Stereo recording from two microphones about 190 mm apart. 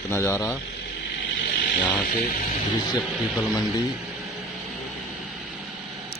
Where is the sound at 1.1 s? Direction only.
55° left (ahead or behind).